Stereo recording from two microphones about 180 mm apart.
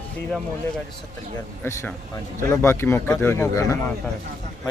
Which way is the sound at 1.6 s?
10° left (ahead or behind).